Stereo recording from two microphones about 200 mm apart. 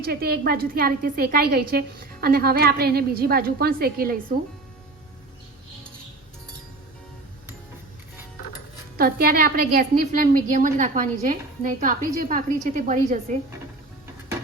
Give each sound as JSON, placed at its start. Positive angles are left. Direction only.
{"t": 0.0, "sound": "a woman's voice", "side_deg": -50}
{"t": 9.0, "sound": "a woman's voice", "side_deg": -50}